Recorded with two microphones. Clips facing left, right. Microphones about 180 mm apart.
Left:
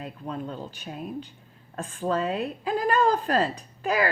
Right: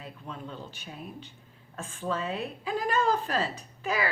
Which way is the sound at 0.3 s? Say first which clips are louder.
Left 7 dB; 40° left (ahead or behind).